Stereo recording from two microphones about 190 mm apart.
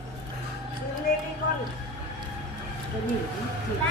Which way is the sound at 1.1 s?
50° left (ahead or behind).